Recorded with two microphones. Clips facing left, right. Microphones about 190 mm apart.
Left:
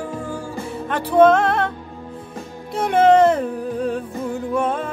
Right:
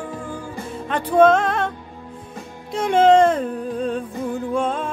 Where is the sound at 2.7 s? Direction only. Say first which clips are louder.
Even; 55° left (ahead or behind).